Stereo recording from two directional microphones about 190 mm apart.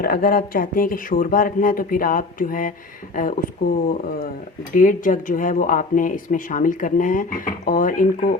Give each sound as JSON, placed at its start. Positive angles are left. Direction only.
{"t": 0.0, "sound": "speech", "side_deg": 50}